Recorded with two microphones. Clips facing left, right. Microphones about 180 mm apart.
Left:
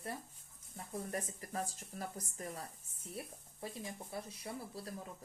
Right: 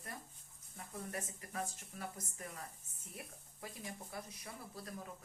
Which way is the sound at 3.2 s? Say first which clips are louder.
Left 4 dB; 30° left (ahead or behind).